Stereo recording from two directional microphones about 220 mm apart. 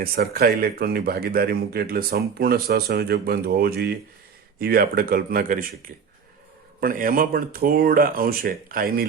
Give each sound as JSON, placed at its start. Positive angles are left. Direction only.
{"t": 0.0, "sound": "speech", "side_deg": -45}
{"t": 6.7, "sound": "speech", "side_deg": -40}